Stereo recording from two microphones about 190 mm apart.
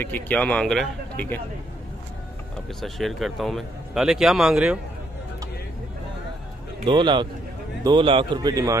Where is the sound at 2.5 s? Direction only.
Centre (ahead or behind).